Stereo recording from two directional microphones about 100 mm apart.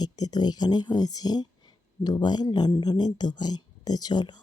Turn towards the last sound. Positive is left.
turn(degrees=45)  # may be behind; listen again after turning